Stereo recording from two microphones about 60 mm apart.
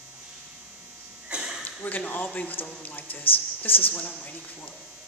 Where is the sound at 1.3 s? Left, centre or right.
Centre.